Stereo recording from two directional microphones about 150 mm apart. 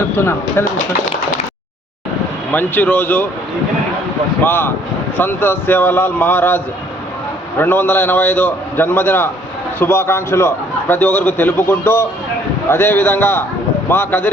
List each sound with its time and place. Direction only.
0.2 s a man's voice: 15° left (ahead or behind)
2.5 s a man's voice: 10° left (ahead or behind)
4.4 s a man's voice: 15° left (ahead or behind)
7.6 s a man's voice: 15° left (ahead or behind)